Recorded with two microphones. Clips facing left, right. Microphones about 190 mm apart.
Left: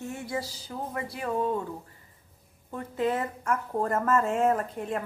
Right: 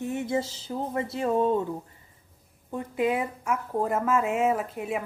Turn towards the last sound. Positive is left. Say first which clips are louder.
# right 1 dB
turn(degrees=-5)  # may be behind; listen again after turning